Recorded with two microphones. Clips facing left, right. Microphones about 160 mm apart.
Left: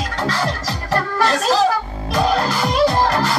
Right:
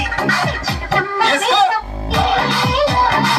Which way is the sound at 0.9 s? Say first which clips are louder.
Right 1 dB; 80° right.